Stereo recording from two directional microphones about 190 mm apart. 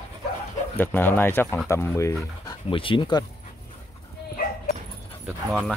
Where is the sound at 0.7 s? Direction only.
10° left (ahead or behind).